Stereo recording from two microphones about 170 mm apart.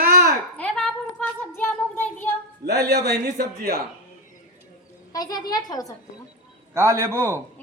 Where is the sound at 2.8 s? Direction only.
75° right (ahead or behind).